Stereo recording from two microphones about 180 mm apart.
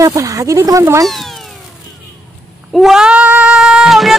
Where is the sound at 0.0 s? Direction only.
20° right (ahead or behind).